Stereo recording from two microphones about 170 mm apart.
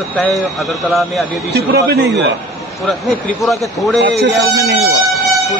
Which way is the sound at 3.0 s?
Centre (ahead or behind).